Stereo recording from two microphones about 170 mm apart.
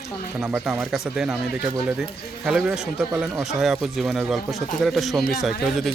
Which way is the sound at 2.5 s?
5° right (ahead or behind).